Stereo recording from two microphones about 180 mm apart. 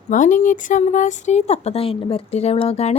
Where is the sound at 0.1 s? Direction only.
45° left (ahead or behind).